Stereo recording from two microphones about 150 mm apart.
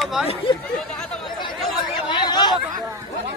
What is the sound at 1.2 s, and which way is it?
Chatter, 30° left (ahead or behind).